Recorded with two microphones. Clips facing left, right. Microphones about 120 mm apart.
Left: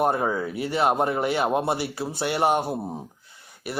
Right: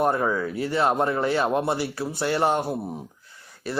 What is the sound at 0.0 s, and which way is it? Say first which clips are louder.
Speech: even; 25° left (ahead or behind).